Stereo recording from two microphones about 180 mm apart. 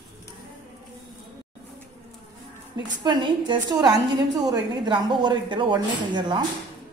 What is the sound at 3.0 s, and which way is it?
Speech, 25° right (ahead or behind).